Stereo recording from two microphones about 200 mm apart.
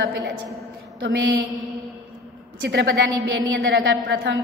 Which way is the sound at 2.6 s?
55° right (ahead or behind).